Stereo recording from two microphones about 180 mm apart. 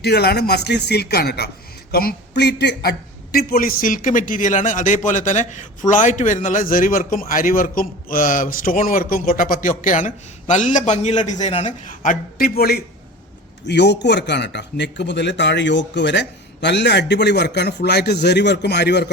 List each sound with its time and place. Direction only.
0.0 s speech: 65° left (ahead or behind)
3.3 s a man's voice: 55° left (ahead or behind)
13.7 s speech: 70° left (ahead or behind)